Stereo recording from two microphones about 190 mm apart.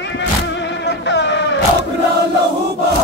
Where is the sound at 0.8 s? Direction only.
65° left (ahead or behind).